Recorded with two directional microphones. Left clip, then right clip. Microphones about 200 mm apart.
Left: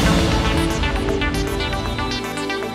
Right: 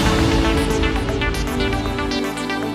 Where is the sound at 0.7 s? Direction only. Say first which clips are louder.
Right 1 dB; centre (ahead or behind).